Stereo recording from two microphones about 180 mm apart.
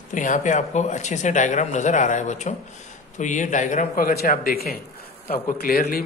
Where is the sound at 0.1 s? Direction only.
45° left (ahead or behind).